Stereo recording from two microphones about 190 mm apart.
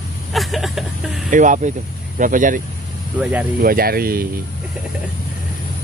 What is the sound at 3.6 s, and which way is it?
Speech, 50° right (ahead or behind).